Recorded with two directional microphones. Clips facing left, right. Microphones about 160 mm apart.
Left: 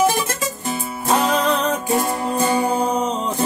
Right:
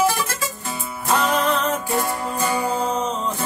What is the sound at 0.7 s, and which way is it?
Music, 20° left (ahead or behind).